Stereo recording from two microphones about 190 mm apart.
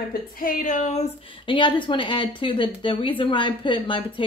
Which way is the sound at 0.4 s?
45° left (ahead or behind).